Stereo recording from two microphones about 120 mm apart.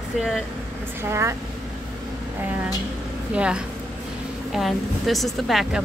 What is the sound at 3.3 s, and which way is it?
A woman's voice, 10° right (ahead or behind).